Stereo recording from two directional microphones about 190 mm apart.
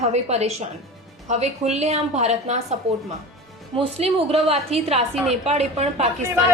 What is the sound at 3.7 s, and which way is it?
A woman's voice, 30° right (ahead or behind).